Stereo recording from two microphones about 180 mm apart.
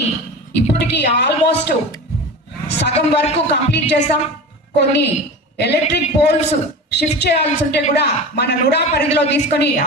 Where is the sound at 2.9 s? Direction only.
35° left (ahead or behind).